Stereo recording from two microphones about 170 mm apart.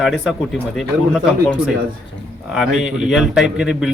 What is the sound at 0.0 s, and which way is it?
A man's voice, centre (ahead or behind).